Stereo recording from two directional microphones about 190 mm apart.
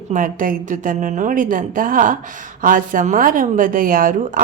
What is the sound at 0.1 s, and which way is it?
Speech, 45° right (ahead or behind).